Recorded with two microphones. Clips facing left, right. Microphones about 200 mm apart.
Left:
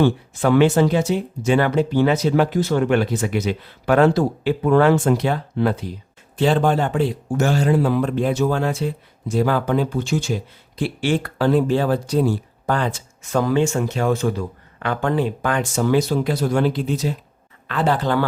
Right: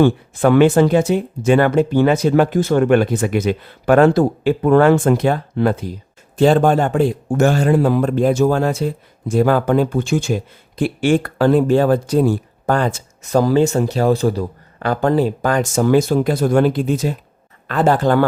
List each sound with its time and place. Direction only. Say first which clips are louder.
0.0 s speech: right 4 dB; 55° right (ahead or behind)